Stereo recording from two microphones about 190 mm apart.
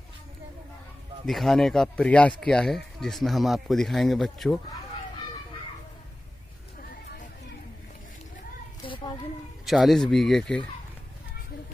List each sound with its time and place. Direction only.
1.2 s speech: centre (ahead or behind)
8.8 s a sound: 25° left (ahead or behind)
9.7 s speech: centre (ahead or behind)